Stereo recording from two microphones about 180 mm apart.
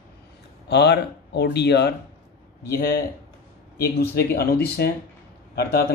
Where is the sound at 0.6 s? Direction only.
70° left (ahead or behind).